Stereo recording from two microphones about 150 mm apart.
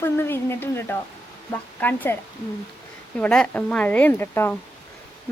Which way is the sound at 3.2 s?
10° left (ahead or behind).